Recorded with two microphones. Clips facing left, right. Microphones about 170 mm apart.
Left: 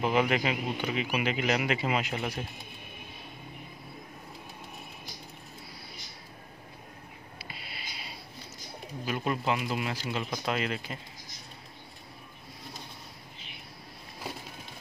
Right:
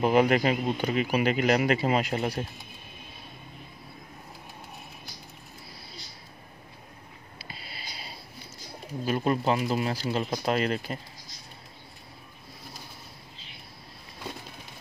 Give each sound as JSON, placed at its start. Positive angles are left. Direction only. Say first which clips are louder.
{"t": 0.0, "sound": "speech", "louder": "right 5 dB", "side_deg": -40}
{"t": 7.3, "sound": "a sound", "louder": "right 2 dB", "side_deg": -35}
{"t": 9.0, "sound": "speech", "louder": "right 5 dB", "side_deg": -40}